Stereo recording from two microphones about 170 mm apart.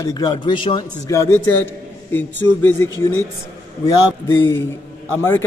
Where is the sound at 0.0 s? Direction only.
25° left (ahead or behind).